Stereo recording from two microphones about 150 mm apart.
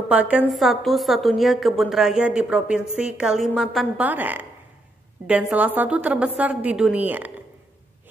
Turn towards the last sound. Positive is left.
turn(degrees=-10)  # may be behind; listen again after turning